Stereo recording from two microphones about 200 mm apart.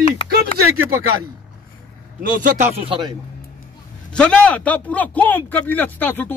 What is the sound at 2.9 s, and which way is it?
Speech, 20° right (ahead or behind).